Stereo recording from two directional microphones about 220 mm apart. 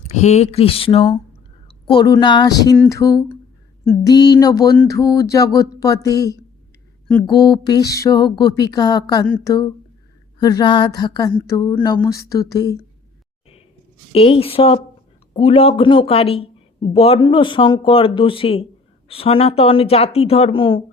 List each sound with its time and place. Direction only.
0.1 s a woman's voice: 30° left (ahead or behind)
2.7 s speech: 5° left (ahead or behind)
3.0 s a sound: 15° left (ahead or behind)
7.3 s speech: 20° left (ahead or behind)
7.9 s a sound: 15° left (ahead or behind)
14.1 s speech: 25° left (ahead or behind)